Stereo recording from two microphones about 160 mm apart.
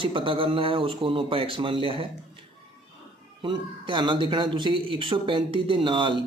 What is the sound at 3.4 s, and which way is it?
Speech, 30° right (ahead or behind).